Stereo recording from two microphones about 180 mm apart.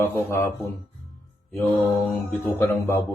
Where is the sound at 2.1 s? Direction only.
10° left (ahead or behind).